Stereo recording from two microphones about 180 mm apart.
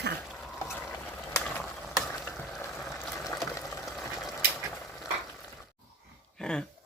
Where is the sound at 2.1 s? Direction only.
15° left (ahead or behind).